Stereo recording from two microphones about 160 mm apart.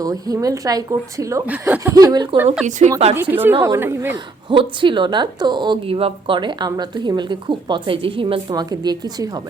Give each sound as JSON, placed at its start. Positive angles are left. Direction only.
{"t": 0.0, "sound": "a woman's voice", "side_deg": -20}
{"t": 2.6, "sound": "a woman's voice", "side_deg": -50}
{"t": 3.2, "sound": "speech", "side_deg": -10}
{"t": 4.4, "sound": "a woman's voice", "side_deg": -30}